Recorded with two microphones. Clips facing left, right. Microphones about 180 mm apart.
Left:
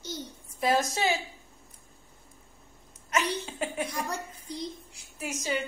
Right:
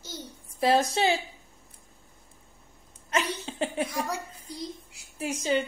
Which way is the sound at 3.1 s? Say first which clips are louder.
Even; 30° right (ahead or behind).